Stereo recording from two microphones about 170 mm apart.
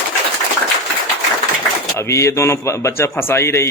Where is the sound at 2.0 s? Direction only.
15° left (ahead or behind).